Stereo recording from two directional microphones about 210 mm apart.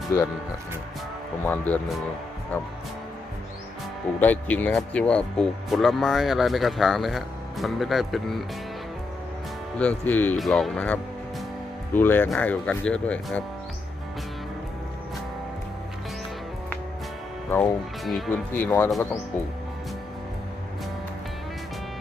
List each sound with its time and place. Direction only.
1.5 s speech: 10° left (ahead or behind)
4.2 s speech: 5° left (ahead or behind)
9.7 s speech: 5° left (ahead or behind)
17.5 s speech: 10° left (ahead or behind)